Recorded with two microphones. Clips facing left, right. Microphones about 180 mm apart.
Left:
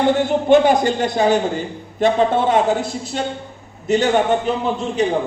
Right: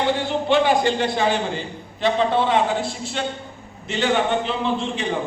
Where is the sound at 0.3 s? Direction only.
45° left (ahead or behind).